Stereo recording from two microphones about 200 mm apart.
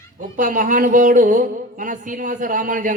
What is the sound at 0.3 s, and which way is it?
A man's voice, 40° right (ahead or behind).